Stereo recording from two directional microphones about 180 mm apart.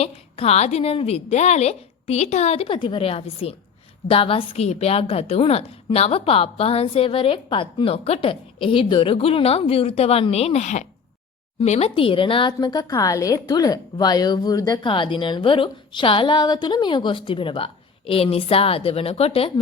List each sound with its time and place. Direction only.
0.0 s a woman's voice: 35° left (ahead or behind)